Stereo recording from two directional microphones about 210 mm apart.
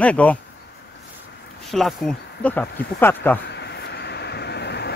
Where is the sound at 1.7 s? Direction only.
Centre (ahead or behind).